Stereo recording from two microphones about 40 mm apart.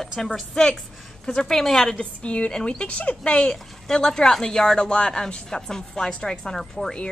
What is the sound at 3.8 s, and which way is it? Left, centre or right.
A woman's voice, centre.